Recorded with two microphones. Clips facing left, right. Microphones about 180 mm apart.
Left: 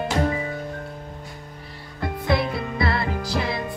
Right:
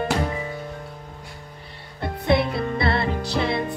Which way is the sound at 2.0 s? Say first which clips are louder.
Right 2 dB; 25° right (ahead or behind).